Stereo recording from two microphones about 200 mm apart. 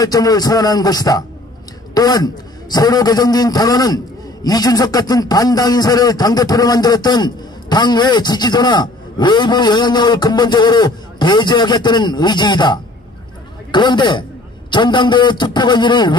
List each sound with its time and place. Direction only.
0.0 s a man's voice: 20° left (ahead or behind)